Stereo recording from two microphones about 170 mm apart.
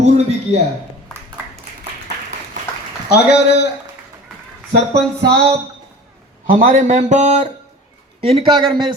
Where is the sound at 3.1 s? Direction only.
75° left (ahead or behind).